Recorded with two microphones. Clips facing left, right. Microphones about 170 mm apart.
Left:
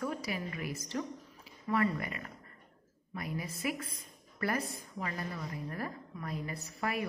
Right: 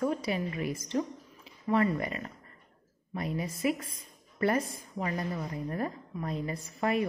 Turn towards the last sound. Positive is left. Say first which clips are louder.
# right 6 dB
turn(degrees=-25)  # may be behind; listen again after turning